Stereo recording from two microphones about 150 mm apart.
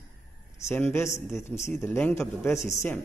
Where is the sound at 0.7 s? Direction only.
15° left (ahead or behind).